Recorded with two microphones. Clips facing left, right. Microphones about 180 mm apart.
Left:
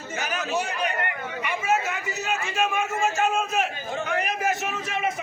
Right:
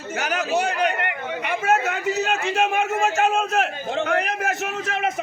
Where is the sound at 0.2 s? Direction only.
70° right (ahead or behind).